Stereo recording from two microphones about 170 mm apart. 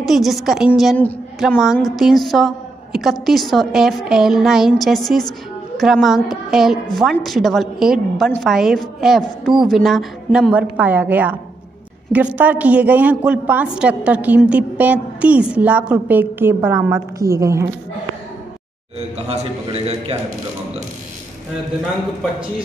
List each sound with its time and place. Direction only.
0.0 s a woman's voice: centre (ahead or behind); by 17.6 s 15° right (ahead or behind)
19.2 s a man's voice: 40° right (ahead or behind)